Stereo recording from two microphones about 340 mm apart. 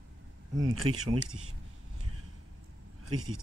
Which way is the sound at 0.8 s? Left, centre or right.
Centre.